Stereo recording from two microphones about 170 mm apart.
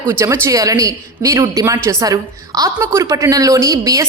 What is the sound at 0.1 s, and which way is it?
A woman's voice, 15° right (ahead or behind).